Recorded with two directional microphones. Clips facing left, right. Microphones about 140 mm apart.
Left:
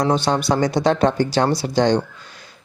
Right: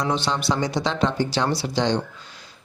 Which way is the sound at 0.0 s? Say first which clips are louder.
Left 5 dB; 45° left (ahead or behind).